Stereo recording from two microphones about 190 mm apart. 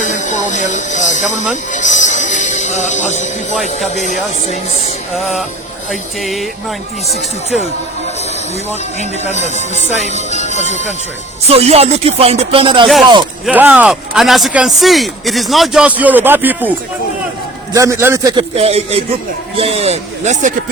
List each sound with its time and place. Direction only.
0.0 s music: 40° left (ahead or behind)
3.5 s speech: centre (ahead or behind)
3.8 s speech: 40° left (ahead or behind)
5.1 s speech: centre (ahead or behind)
9.0 s speech: 40° left (ahead or behind)
11.4 s music: 30° right (ahead or behind)
13.4 s speech: 10° right (ahead or behind)
17.7 s a man's voice: 15° right (ahead or behind)
18.5 s music: 30° right (ahead or behind)